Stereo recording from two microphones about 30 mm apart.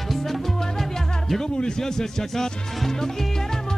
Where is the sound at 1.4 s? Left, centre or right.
Left.